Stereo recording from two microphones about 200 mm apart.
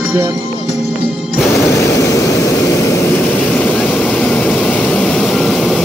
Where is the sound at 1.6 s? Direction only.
15° left (ahead or behind).